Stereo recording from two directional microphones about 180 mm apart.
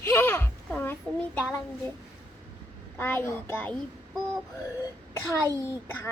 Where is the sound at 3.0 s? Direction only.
10° left (ahead or behind).